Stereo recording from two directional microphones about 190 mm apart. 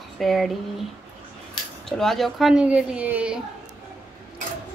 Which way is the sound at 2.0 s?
Centre (ahead or behind).